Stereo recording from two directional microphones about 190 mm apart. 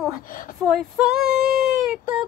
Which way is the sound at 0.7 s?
Centre (ahead or behind).